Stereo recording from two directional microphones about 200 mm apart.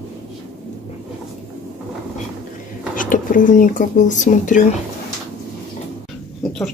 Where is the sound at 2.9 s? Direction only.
40° left (ahead or behind).